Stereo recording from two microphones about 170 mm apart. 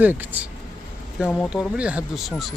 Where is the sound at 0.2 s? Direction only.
10° right (ahead or behind).